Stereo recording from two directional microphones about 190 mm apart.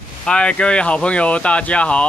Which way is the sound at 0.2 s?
5° left (ahead or behind).